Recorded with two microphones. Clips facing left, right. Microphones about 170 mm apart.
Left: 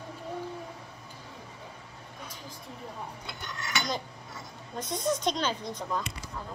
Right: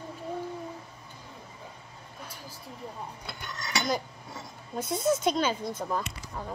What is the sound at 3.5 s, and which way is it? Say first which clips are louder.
Cutlery: right 1 dB; 35° right (ahead or behind).